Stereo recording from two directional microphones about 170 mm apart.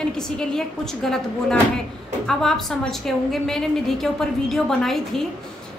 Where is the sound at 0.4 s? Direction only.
5° left (ahead or behind).